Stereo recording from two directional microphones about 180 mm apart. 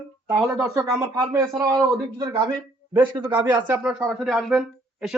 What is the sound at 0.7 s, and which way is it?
Speech, 20° right (ahead or behind).